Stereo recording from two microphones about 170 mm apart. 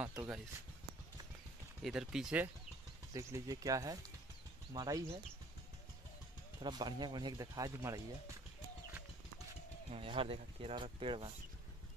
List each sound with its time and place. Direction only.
0.0 s speech: 20° right (ahead or behind)
1.8 s speech: centre (ahead or behind)
3.1 s speech: 20° right (ahead or behind)
6.6 s speech: 25° right (ahead or behind)
9.8 s speech: 30° right (ahead or behind)